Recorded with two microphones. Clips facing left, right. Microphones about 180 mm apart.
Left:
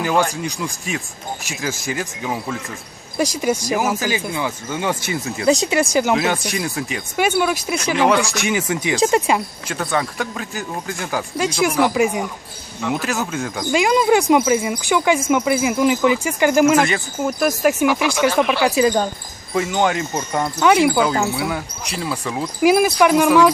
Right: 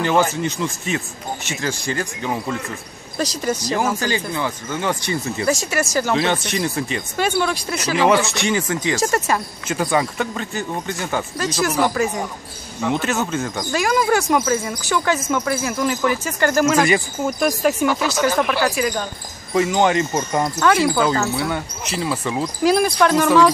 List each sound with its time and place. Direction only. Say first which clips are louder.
0.0 s speech: right 1 dB; centre (ahead or behind)
5.5 s speech: left 5 dB; 20° left (ahead or behind)
6.1 s speech: even; 5° left (ahead or behind)
7.8 s speech: right 1 dB; 5° right (ahead or behind)
8.4 s speech: even; 10° left (ahead or behind)
9.7 s speech: right 3 dB; 5° right (ahead or behind); by 12.2 s 15° left (ahead or behind)
12.8 s speech: right 1 dB; centre (ahead or behind)
13.7 s speech: left 4 dB; 15° left (ahead or behind)
16.8 s speech: right 2 dB; centre (ahead or behind)
18.8 s speech: left 6 dB; 30° left (ahead or behind)
19.5 s speech: right 2 dB; centre (ahead or behind)
20.5 s speech: left 4 dB; 15° left (ahead or behind); by 22.4 s centre (ahead or behind)
22.4 s speech: left 3 dB; 10° left (ahead or behind)